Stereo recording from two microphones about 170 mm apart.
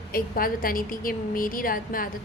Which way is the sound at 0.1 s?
60° left (ahead or behind).